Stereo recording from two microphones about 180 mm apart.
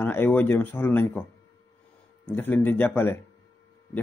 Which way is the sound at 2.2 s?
10° left (ahead or behind).